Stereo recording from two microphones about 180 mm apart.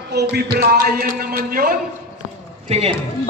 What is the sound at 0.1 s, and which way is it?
Speech, 65° right (ahead or behind).